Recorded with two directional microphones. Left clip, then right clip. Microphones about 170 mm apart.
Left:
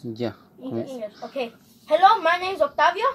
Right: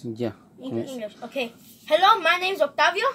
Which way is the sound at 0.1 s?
5° right (ahead or behind).